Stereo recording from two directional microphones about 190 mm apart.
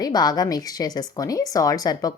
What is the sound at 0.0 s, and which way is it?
A woman's voice, 20° left (ahead or behind).